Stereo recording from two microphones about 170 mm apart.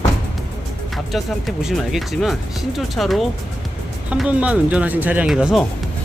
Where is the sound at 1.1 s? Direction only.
Centre (ahead or behind).